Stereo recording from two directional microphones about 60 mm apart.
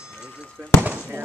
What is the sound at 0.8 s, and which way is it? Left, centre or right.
Speech, right.